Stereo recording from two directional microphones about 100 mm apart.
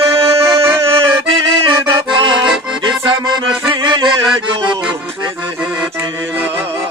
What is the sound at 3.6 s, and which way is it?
Music, 45° right (ahead or behind).